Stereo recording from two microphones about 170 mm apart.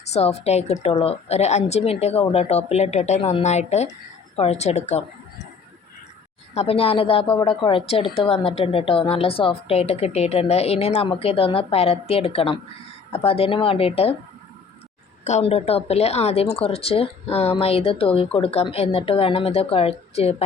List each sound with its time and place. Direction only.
0.0 s a woman's voice: 40° left (ahead or behind)
6.5 s a woman's voice: 35° left (ahead or behind)
15.2 s a woman's voice: 40° left (ahead or behind)